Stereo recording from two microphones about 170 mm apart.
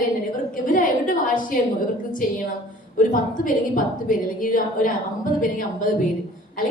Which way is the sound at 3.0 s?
50° left (ahead or behind).